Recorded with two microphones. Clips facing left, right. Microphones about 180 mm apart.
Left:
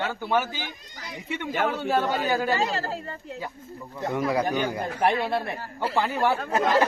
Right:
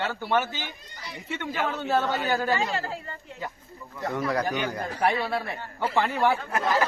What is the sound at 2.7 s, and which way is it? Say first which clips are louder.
Speech: left 1 dB; 40° left (ahead or behind).